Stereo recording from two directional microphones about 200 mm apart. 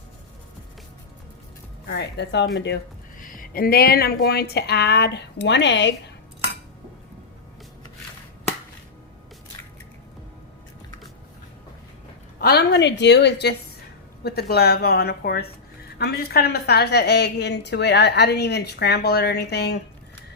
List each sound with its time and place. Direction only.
1.9 s a woman's voice: 60° left (ahead or behind)
12.4 s a woman's voice: 50° left (ahead or behind)